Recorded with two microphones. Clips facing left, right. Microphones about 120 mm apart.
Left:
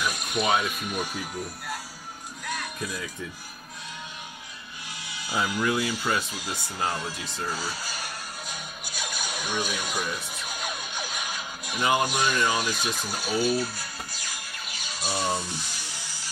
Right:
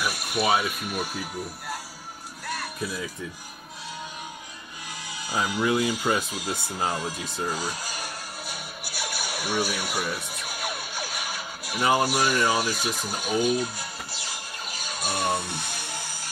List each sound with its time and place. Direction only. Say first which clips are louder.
0.0 s speech: right 1 dB; 10° right (ahead or behind)
2.4 s music: right 1 dB; 5° right (ahead or behind)
5.6 s speech: right 5 dB; 20° right (ahead or behind)
9.7 s music: right 1 dB; 10° right (ahead or behind); by 16.3 s 50° right (ahead or behind)